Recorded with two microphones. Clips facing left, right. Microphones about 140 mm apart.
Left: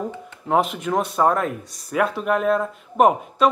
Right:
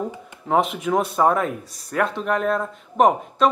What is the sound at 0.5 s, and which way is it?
Speech, centre (ahead or behind).